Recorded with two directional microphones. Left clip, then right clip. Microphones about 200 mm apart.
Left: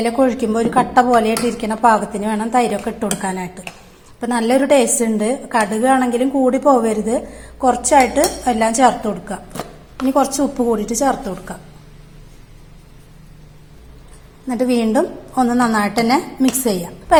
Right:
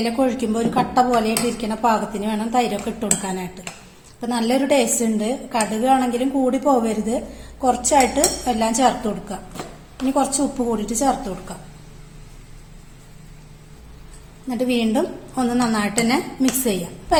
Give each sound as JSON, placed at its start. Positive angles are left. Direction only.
{"t": 0.0, "sound": "a woman's voice", "side_deg": 25}
{"t": 14.4, "sound": "a woman's voice", "side_deg": 25}